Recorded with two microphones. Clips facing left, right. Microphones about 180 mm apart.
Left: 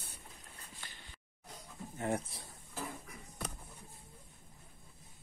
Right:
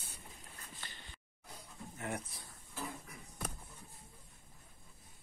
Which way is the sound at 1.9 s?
30° left (ahead or behind).